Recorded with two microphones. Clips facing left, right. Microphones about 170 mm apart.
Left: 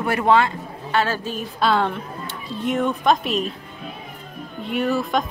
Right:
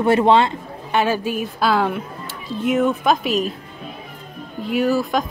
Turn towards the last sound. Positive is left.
turn(degrees=0)  # may be behind; listen again after turning